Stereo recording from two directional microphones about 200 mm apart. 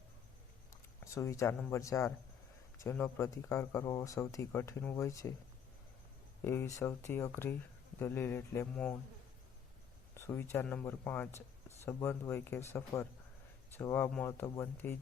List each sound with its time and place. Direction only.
0.7 s a sound: 15° left (ahead or behind)
1.7 s speech: 15° left (ahead or behind)
6.4 s speech: 10° left (ahead or behind)
10.2 s speech: 10° left (ahead or behind)